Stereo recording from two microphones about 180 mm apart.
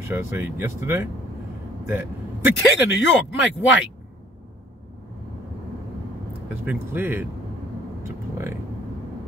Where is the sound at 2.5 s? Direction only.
90° left.